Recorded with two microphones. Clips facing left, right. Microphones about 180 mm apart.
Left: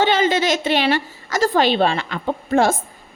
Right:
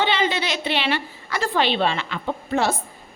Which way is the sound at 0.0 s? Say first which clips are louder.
Left 5 dB; 45° left (ahead or behind).